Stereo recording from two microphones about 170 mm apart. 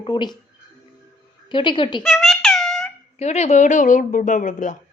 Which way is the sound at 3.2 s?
40° left (ahead or behind).